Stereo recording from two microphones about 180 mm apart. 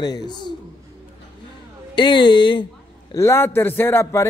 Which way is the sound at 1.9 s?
25° left (ahead or behind).